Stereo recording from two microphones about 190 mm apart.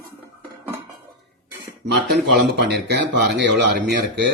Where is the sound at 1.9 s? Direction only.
55° right (ahead or behind).